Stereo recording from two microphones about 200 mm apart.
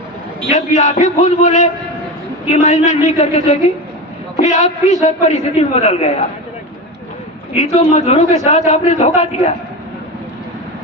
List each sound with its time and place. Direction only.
0.5 s a man's voice: 35° left (ahead or behind)
7.5 s a man's voice: 35° left (ahead or behind)